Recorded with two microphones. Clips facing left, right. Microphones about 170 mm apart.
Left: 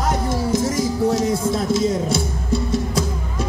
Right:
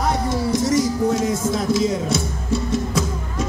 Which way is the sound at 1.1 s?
30° left (ahead or behind).